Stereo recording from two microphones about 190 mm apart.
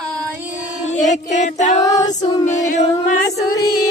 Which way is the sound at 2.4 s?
40° left (ahead or behind).